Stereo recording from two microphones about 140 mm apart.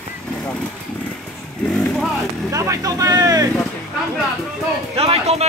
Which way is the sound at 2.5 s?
20° right (ahead or behind).